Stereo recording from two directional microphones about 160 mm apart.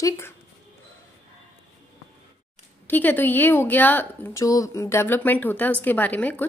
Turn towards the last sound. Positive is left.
turn(degrees=10)  # may be behind; listen again after turning